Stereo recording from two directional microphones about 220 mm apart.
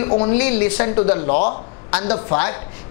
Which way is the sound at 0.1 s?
30° left (ahead or behind).